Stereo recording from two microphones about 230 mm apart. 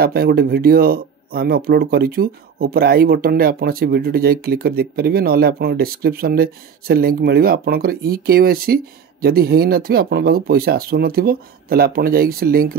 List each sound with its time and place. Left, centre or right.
0.0 s speech: right